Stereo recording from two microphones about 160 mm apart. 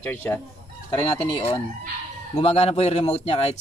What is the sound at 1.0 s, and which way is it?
Speech, 35° left (ahead or behind).